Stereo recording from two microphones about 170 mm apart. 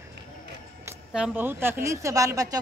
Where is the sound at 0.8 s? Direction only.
10° right (ahead or behind).